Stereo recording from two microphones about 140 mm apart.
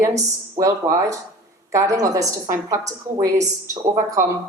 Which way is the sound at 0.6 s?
25° right (ahead or behind).